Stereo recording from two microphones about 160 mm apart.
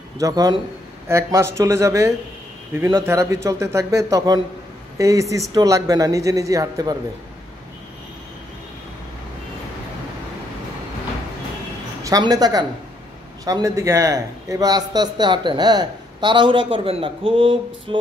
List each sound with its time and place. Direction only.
0.2 s a man's voice: 25° right (ahead or behind)
12.0 s a woman's voice: 25° right (ahead or behind)